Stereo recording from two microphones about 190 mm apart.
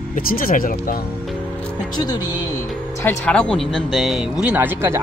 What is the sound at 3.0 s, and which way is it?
Speech, 10° left (ahead or behind).